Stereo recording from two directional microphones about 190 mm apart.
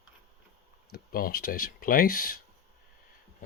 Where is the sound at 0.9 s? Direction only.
50° left (ahead or behind).